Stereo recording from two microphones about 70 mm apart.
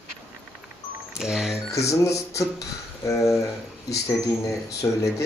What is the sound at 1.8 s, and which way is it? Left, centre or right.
Speech, left.